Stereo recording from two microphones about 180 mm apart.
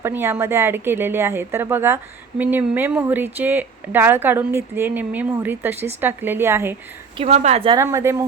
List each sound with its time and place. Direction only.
0.0 s speech: 15° right (ahead or behind)
7.2 s speech: 40° right (ahead or behind)
7.8 s speech: 15° right (ahead or behind)